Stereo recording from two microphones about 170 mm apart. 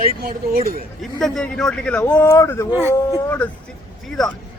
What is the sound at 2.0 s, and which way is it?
Speech, 15° left (ahead or behind).